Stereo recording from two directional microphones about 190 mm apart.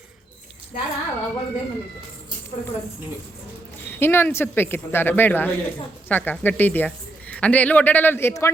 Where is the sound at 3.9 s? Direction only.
10° left (ahead or behind).